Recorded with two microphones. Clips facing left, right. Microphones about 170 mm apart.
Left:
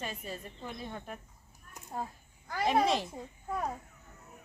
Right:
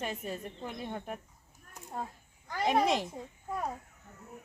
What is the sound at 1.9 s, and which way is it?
Speech, 5° left (ahead or behind).